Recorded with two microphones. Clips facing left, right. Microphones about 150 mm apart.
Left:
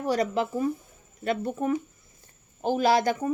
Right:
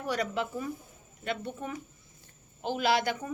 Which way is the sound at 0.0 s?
35° left (ahead or behind).